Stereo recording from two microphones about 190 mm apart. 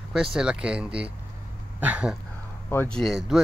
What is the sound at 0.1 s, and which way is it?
Speech, 5° right (ahead or behind).